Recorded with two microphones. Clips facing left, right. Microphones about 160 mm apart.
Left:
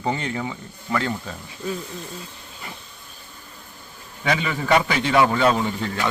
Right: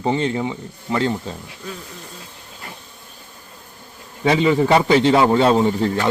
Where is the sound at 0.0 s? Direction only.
25° right (ahead or behind).